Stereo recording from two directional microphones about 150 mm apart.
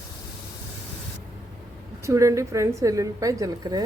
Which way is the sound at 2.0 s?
20° right (ahead or behind).